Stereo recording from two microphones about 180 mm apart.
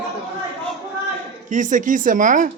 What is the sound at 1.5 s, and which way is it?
Speech, 45° right (ahead or behind).